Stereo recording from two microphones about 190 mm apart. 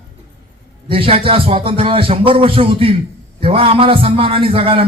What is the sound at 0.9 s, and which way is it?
A man's voice, 30° right (ahead or behind).